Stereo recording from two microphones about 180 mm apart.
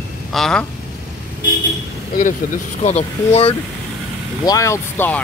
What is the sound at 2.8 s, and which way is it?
Speech, 35° left (ahead or behind).